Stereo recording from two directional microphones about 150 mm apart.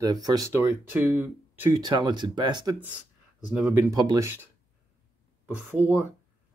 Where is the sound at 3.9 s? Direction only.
25° right (ahead or behind).